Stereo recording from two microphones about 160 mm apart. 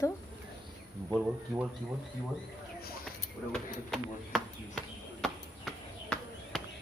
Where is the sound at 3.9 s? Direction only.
Centre (ahead or behind).